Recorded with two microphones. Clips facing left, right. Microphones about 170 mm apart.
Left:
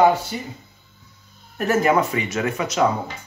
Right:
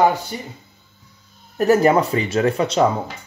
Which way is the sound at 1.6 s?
35° right (ahead or behind).